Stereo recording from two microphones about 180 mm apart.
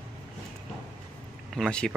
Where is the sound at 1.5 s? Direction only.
5° left (ahead or behind).